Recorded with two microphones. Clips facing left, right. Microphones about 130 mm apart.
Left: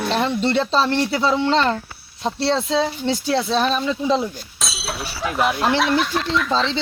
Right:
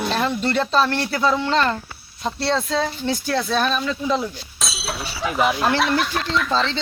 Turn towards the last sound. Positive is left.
turn(degrees=0)  # may be behind; listen again after turning